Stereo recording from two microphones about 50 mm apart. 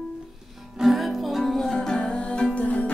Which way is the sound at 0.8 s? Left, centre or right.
Centre.